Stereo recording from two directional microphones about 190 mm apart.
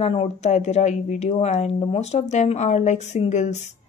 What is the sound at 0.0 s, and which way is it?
A woman's voice, 30° left (ahead or behind).